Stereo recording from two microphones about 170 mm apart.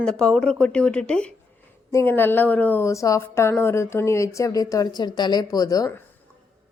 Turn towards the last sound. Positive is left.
turn(degrees=20)  # may be behind; listen again after turning